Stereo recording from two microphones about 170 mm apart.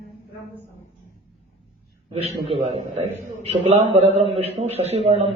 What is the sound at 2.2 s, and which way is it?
A man's voice, 40° right (ahead or behind).